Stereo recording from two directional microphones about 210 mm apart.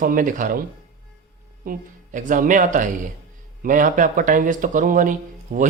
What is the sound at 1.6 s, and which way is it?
Speech, 40° right (ahead or behind).